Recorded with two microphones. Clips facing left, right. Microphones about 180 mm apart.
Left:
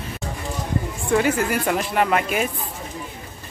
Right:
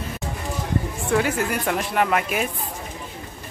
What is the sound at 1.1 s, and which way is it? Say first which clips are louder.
Speech: left 2 dB; centre (ahead or behind).